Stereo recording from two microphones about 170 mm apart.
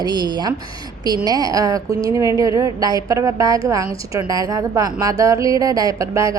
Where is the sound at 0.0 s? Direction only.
25° right (ahead or behind).